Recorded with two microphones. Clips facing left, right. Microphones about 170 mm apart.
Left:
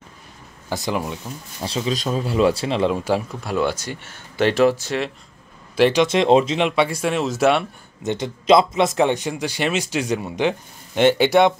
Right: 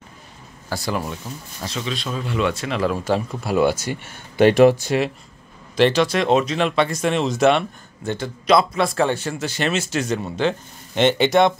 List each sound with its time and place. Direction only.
0.7 s speech: 20° left (ahead or behind)
1.6 s speech: 30° left (ahead or behind)
3.0 s speech: 10° left (ahead or behind)
3.3 s speech: 5° right (ahead or behind)
5.8 s speech: 10° left (ahead or behind)
6.0 s speech: 25° left (ahead or behind)
6.7 s speech: 10° left (ahead or behind)
8.0 s speech: 20° left (ahead or behind)